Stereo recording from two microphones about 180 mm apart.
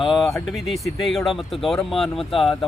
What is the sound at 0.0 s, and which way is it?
Speech, centre (ahead or behind).